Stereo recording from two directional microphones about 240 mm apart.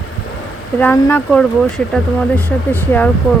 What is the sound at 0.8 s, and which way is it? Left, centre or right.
Speech, centre.